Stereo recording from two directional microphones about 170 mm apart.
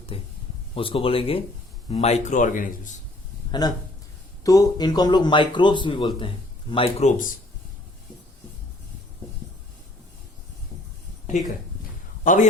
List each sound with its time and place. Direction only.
0.1 s speech: 35° left (ahead or behind); by 2.9 s 50° left (ahead or behind)
3.6 s a man's voice: 25° left (ahead or behind)
12.2 s a man's voice: 50° left (ahead or behind)